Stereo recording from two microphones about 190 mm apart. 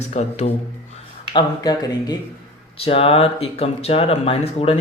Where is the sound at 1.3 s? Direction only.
20° left (ahead or behind).